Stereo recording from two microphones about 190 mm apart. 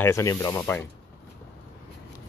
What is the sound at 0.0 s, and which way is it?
Speech, 15° left (ahead or behind).